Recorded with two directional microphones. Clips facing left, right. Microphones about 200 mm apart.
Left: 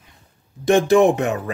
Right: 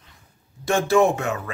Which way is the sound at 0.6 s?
15° left (ahead or behind).